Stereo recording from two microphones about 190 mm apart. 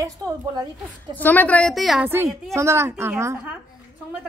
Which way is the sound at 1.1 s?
10° left (ahead or behind).